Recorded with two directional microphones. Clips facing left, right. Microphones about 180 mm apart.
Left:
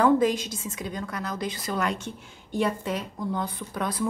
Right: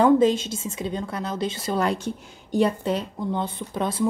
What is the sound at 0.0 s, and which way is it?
A woman's voice, 25° right (ahead or behind).